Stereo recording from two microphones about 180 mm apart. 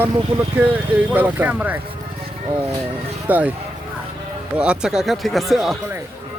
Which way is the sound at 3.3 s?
10° right (ahead or behind).